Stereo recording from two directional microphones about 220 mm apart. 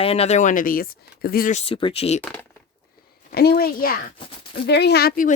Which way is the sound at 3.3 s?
45° left (ahead or behind).